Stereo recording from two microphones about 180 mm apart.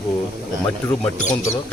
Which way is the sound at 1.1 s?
45° left (ahead or behind).